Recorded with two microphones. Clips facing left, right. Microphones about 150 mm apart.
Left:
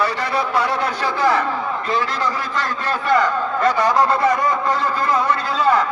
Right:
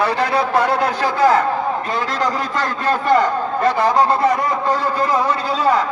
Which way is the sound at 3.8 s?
25° right (ahead or behind).